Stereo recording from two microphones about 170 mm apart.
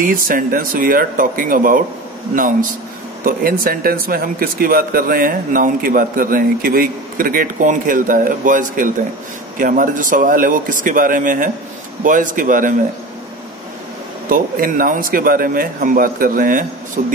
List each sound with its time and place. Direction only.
0.0 s speech: 55° right (ahead or behind)
3.3 s speech: 55° right (ahead or behind)
14.3 s speech: 55° right (ahead or behind)